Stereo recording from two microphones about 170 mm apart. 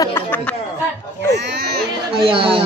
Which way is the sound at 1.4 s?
75° right (ahead or behind).